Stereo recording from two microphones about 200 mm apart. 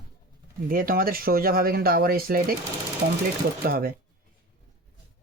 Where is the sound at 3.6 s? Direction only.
50° right (ahead or behind).